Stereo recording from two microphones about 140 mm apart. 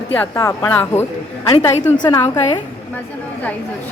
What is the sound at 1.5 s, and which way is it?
Speech, 50° left (ahead or behind).